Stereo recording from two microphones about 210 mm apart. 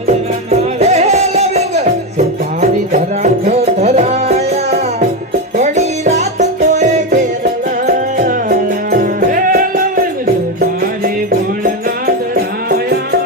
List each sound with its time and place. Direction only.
0.1 s music: 30° right (ahead or behind)